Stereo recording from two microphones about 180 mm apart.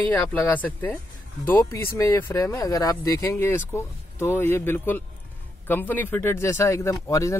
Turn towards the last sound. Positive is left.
turn(degrees=15)  # may be behind; listen again after turning